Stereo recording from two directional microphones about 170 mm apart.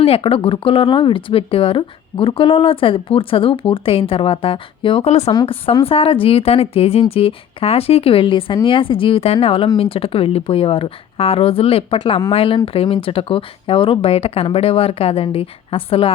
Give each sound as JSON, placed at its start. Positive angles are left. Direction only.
{"t": 0.0, "sound": "speech", "side_deg": 35}
{"t": 5.3, "sound": "speech", "side_deg": 30}